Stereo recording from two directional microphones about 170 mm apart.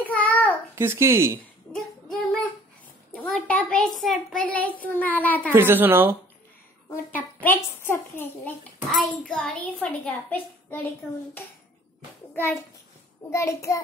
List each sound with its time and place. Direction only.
0.0 s child singing: 10° left (ahead or behind)
0.7 s speech: 15° right (ahead or behind)
1.7 s child singing: 5° left (ahead or behind)
3.1 s a sound: 10° left (ahead or behind)
4.8 s a child's voice: 10° left (ahead or behind)
5.5 s speech: 10° right (ahead or behind)
6.9 s a child's voice: 10° left (ahead or behind)
8.8 s a child's voice: centre (ahead or behind)
13.3 s a child's voice: 15° left (ahead or behind)